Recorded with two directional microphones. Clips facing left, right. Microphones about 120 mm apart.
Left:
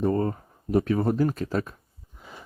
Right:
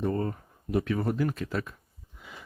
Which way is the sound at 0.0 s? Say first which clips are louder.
Left 5 dB; 35° left (ahead or behind).